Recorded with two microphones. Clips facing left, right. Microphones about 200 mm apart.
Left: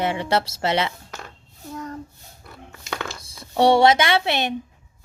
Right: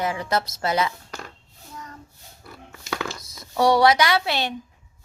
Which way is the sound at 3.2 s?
30° left (ahead or behind).